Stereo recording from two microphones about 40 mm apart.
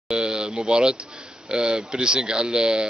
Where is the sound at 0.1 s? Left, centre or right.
Right.